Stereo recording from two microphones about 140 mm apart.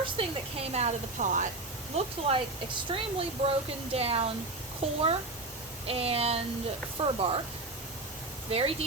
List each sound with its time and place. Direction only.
0.0 s speech: 40° right (ahead or behind); by 1.5 s 60° right (ahead or behind)
2.0 s speech: 40° right (ahead or behind)
8.4 s speech: 45° right (ahead or behind)